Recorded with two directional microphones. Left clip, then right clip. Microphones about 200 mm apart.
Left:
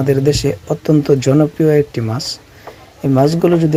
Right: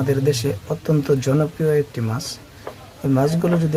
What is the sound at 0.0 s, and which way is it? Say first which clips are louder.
Speech: left 6 dB; 20° left (ahead or behind).